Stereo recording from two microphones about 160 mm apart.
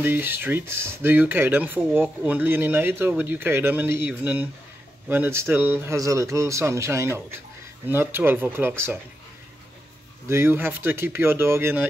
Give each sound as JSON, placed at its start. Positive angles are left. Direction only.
{"t": 0.0, "sound": "speech", "side_deg": -10}
{"t": 10.2, "sound": "speech", "side_deg": -15}